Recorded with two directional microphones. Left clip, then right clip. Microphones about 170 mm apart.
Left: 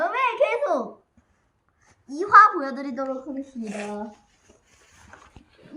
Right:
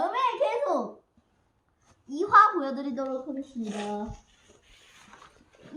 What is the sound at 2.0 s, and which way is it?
A woman's voice, centre (ahead or behind).